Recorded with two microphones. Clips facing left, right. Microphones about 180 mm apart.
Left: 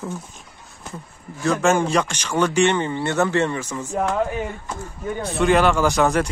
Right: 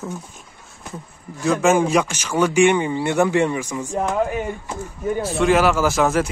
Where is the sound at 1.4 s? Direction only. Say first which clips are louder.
Right 2 dB; 5° right (ahead or behind).